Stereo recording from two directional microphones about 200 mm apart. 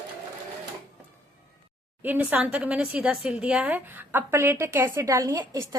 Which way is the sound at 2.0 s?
10° right (ahead or behind).